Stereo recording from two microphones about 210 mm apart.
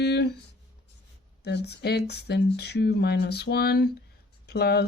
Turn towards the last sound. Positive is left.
turn(degrees=50)  # may be behind; listen again after turning